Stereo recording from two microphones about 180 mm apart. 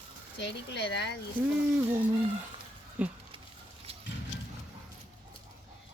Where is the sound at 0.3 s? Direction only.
70° left (ahead or behind).